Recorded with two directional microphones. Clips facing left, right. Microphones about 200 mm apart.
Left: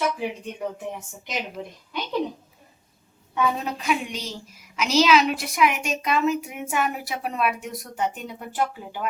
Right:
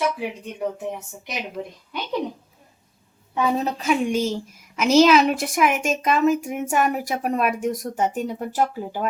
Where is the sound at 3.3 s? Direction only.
35° right (ahead or behind).